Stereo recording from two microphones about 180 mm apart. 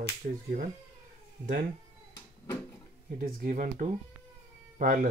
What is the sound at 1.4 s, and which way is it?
Speech, 50° right (ahead or behind).